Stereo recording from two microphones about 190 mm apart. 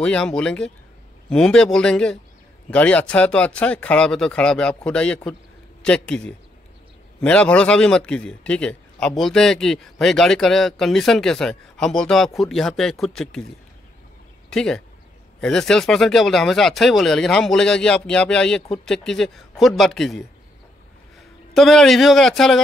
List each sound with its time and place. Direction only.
0.0 s a man's voice: 5° left (ahead or behind)
14.5 s a man's voice: 5° left (ahead or behind)
21.5 s a man's voice: centre (ahead or behind)